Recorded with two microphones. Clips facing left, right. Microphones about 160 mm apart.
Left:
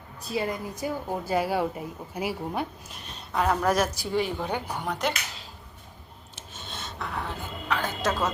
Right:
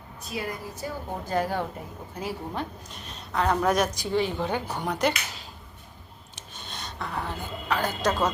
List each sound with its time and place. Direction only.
0.2 s a woman's voice: 30° left (ahead or behind)
1.2 s a woman's voice: 10° left (ahead or behind)
4.9 s speech: centre (ahead or behind)
6.3 s a sound: centre (ahead or behind)